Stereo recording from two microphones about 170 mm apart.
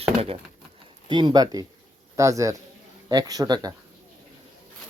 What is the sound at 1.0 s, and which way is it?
Speech, 30° right (ahead or behind).